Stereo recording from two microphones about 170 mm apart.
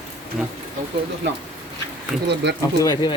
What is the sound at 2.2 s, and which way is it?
Speech, 90° right.